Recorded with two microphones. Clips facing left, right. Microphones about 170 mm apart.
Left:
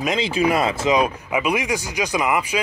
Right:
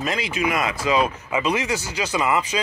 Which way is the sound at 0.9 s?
15° left (ahead or behind).